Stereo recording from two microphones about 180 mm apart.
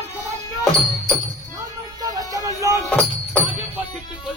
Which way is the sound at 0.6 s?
5° left (ahead or behind).